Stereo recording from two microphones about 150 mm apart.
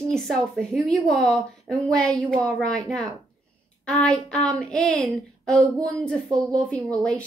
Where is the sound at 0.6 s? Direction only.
5° left (ahead or behind).